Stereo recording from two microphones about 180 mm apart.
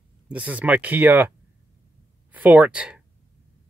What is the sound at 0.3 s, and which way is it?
Speech, 10° right (ahead or behind).